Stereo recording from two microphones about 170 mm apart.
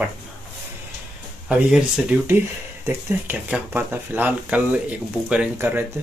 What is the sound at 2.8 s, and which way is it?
Speech, 15° right (ahead or behind).